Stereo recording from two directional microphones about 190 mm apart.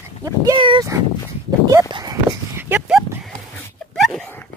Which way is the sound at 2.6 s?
5° right (ahead or behind).